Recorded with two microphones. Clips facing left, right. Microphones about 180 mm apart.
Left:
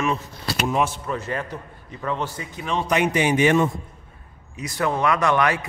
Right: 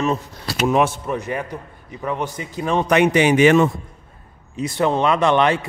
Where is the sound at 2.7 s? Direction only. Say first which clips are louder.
Right 5 dB; 65° right (ahead or behind); by 3.7 s 90° right.